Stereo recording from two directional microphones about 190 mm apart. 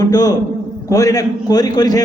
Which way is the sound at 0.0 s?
20° left (ahead or behind).